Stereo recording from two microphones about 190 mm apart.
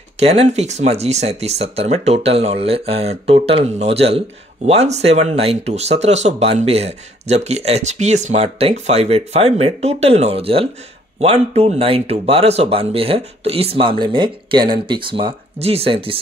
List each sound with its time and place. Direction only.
0.2 s speech: 35° right (ahead or behind)